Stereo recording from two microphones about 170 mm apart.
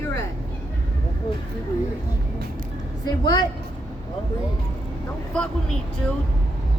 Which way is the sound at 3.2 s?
25° left (ahead or behind).